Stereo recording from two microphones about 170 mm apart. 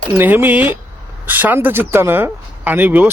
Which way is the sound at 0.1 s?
10° right (ahead or behind).